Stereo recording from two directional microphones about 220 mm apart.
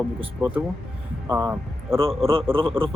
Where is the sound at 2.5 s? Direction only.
25° right (ahead or behind).